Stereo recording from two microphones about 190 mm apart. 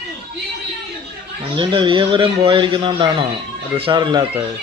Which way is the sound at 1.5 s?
25° right (ahead or behind).